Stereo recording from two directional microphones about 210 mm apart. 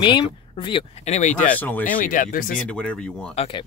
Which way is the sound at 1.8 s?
40° left (ahead or behind).